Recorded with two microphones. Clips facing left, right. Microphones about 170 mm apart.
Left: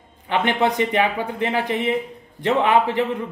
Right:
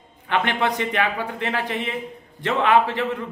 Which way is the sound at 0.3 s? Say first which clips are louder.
Left 3 dB; 15° left (ahead or behind).